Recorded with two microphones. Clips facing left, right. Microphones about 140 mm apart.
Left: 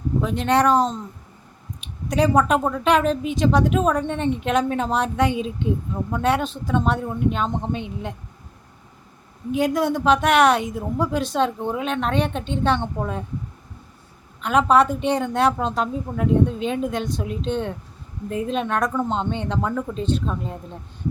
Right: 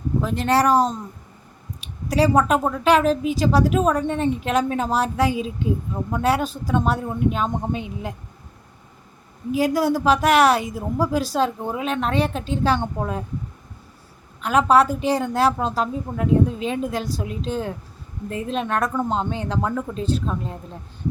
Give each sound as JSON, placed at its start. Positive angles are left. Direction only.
{"t": 0.2, "sound": "a woman's voice", "side_deg": 0}
{"t": 2.0, "sound": "a woman's voice", "side_deg": -5}
{"t": 9.5, "sound": "a woman's voice", "side_deg": -5}
{"t": 14.4, "sound": "a woman's voice", "side_deg": 0}